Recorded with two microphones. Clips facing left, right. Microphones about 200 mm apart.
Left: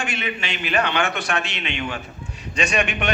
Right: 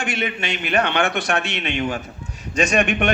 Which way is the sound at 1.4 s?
50° right (ahead or behind).